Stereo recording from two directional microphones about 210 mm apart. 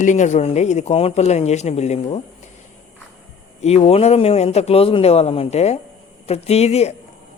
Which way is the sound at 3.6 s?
30° left (ahead or behind).